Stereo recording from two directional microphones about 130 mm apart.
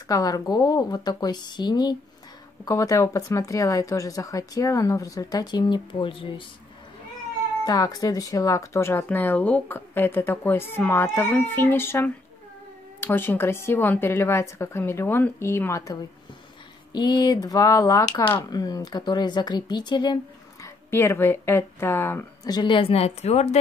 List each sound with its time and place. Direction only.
0.1 s speech: 30° left (ahead or behind)
7.6 s speech: 30° left (ahead or behind)
20.6 s speech: 20° left (ahead or behind)
22.4 s a woman's voice: 35° left (ahead or behind); by 23.6 s 55° left (ahead or behind)